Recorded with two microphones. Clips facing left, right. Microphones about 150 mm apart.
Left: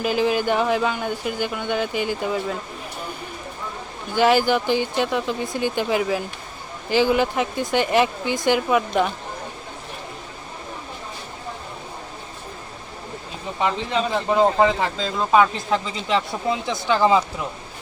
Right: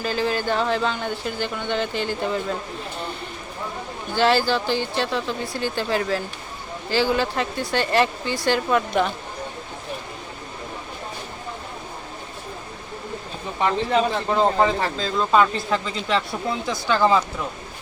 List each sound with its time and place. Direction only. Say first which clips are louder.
0.0 s speech: left 3 dB; 15° left (ahead or behind)
4.1 s speech: left 2 dB; 15° left (ahead or behind)
13.6 s speech: right 2 dB; 15° left (ahead or behind)